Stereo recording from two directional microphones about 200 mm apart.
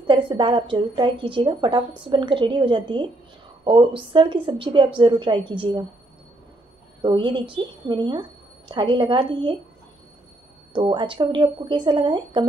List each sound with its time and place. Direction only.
0.0 s a woman's voice: 25° right (ahead or behind)
7.0 s a woman's voice: 25° right (ahead or behind)
10.7 s a woman's voice: 25° right (ahead or behind)